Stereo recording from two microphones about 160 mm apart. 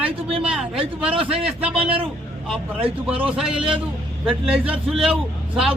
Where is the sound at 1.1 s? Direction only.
35° right (ahead or behind).